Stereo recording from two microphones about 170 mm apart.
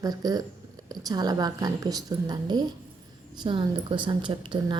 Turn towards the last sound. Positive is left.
turn(degrees=-30)  # may be behind; listen again after turning